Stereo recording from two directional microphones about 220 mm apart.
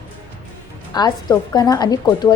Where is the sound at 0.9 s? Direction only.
20° left (ahead or behind).